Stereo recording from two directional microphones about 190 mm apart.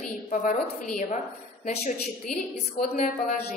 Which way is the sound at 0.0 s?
40° left (ahead or behind).